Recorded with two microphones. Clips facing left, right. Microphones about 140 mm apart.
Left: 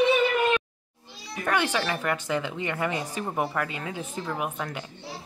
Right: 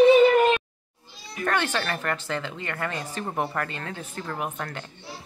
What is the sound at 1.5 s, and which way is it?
Speech, 10° left (ahead or behind).